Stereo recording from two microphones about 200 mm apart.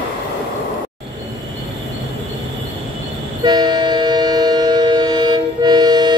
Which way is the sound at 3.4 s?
20° right (ahead or behind).